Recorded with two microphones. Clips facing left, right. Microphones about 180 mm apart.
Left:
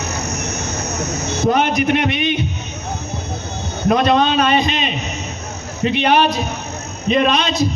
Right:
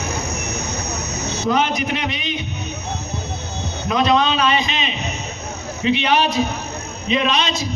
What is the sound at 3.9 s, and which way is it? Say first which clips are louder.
Speech: left 3 dB; 50° left (ahead or behind).